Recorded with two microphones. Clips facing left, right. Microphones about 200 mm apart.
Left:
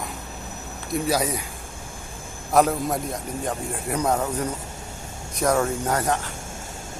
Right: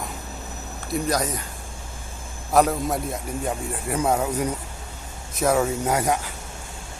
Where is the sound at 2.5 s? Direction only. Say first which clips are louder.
Even; centre (ahead or behind).